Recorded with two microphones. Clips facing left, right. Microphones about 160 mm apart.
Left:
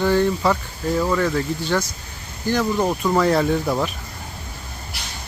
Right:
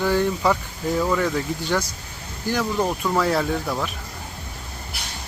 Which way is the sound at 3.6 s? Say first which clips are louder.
Left 4 dB; 15° left (ahead or behind).